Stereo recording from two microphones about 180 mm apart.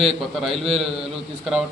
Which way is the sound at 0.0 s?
Centre (ahead or behind).